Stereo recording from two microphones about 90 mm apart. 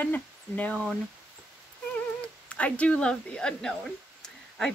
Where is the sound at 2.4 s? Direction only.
15° left (ahead or behind).